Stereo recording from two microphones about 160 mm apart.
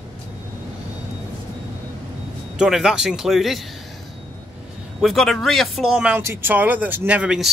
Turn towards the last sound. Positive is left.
turn(degrees=-5)  # may be behind; listen again after turning